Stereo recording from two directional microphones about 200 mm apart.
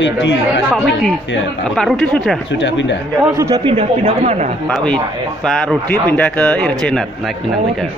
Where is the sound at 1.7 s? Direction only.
5° left (ahead or behind).